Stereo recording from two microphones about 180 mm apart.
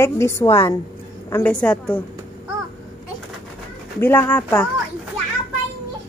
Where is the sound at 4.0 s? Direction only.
10° left (ahead or behind).